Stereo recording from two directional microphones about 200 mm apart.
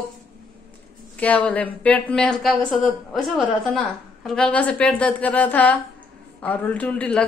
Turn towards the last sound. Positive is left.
turn(degrees=5)  # may be behind; listen again after turning